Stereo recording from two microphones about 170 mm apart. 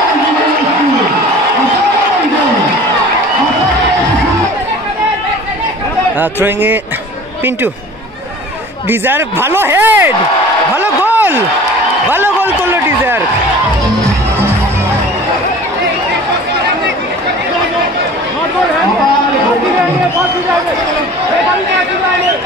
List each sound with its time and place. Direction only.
6.4 s speech: 10° right (ahead or behind)
9.0 s speech: 10° right (ahead or behind)
10.8 s a sound: 10° right (ahead or behind)